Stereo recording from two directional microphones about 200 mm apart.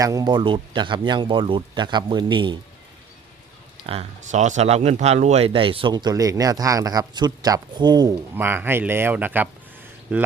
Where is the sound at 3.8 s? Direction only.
35° right (ahead or behind).